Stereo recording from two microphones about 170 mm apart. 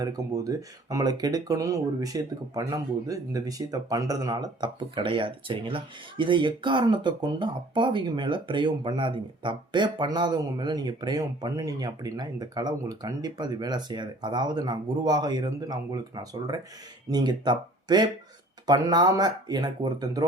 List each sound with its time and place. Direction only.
0.0 s speech: 20° right (ahead or behind)